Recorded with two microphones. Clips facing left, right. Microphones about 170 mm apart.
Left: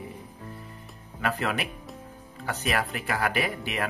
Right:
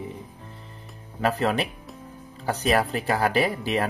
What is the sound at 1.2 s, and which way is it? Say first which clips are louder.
Speech: right 5 dB; 35° right (ahead or behind).